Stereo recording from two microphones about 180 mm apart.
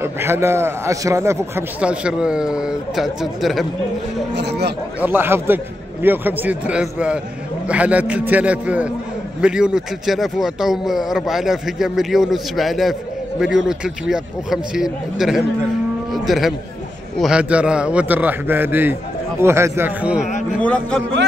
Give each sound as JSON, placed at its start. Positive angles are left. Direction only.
{"t": 0.0, "sound": "a man's voice", "side_deg": -15}
{"t": 4.4, "sound": "speech", "side_deg": -70}
{"t": 5.0, "sound": "a man's voice", "side_deg": -10}
{"t": 20.6, "sound": "speech", "side_deg": 10}